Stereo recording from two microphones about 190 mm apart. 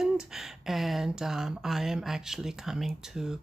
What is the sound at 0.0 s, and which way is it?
Speech, centre (ahead or behind).